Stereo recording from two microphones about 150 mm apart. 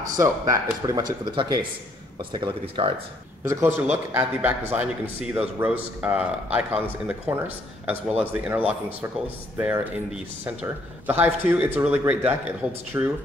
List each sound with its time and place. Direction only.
0.0 s speech: 25° right (ahead or behind)
3.4 s a man's voice: 10° right (ahead or behind)